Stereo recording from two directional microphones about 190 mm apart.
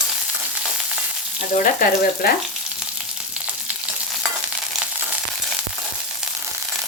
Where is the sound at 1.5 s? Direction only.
45° left (ahead or behind).